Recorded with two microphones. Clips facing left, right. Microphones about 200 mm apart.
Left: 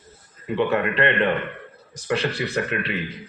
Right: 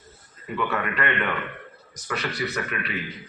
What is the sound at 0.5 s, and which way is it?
A man's voice, 30° left (ahead or behind).